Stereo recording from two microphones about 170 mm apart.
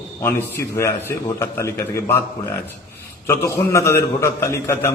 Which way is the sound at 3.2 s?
15° left (ahead or behind).